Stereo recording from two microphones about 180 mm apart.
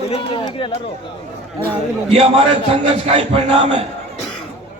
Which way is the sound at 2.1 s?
30° right (ahead or behind).